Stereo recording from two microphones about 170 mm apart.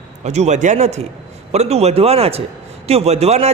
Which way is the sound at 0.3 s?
40° right (ahead or behind).